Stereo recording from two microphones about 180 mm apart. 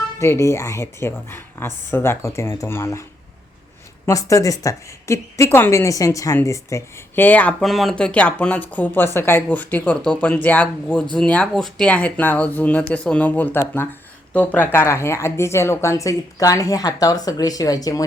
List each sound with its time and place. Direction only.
0.2 s speech: 15° left (ahead or behind)